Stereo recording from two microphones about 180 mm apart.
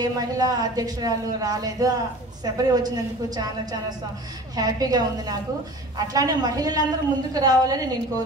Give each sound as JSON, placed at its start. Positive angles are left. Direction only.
{"t": 0.0, "sound": "speech", "side_deg": -20}
{"t": 4.6, "sound": "speech", "side_deg": -20}